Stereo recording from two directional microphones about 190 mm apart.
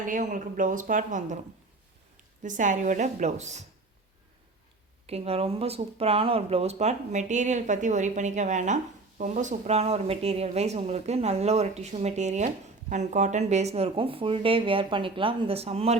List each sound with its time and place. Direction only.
0.0 s speech: 40° right (ahead or behind)
2.4 s speech: 40° right (ahead or behind)
5.0 s speech: 30° right (ahead or behind)